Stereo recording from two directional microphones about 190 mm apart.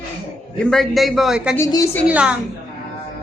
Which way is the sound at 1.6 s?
15° left (ahead or behind).